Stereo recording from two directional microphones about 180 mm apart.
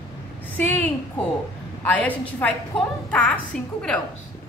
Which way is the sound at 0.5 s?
10° left (ahead or behind).